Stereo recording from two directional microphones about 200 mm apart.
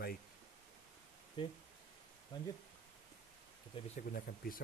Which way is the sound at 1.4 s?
25° left (ahead or behind).